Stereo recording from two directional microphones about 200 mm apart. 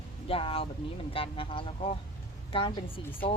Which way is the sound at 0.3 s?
30° left (ahead or behind).